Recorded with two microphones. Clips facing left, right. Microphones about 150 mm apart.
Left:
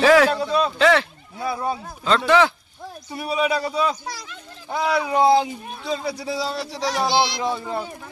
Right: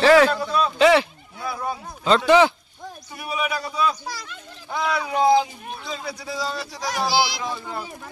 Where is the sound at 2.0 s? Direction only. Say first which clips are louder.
Right 2 dB; 5° right (ahead or behind).